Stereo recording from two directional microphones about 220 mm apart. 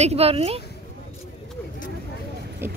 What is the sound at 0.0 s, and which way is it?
Speech, 25° right (ahead or behind).